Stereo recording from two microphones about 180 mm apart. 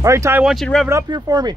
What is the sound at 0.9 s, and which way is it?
Speech, 15° right (ahead or behind).